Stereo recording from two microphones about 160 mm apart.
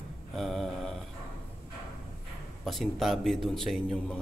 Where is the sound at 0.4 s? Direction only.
Centre (ahead or behind).